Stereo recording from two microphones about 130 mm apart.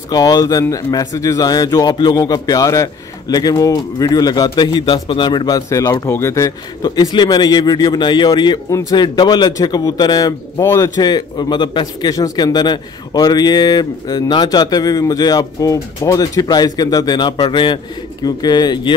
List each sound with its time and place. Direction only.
0.1 s a man's voice: 30° left (ahead or behind)
8.6 s a man's voice: 25° left (ahead or behind)
9.0 s a man's voice: 35° left (ahead or behind)